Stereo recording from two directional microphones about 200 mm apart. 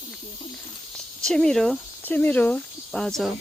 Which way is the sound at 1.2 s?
5° left (ahead or behind).